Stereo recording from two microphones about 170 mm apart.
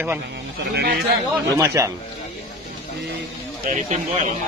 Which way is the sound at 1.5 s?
20° right (ahead or behind).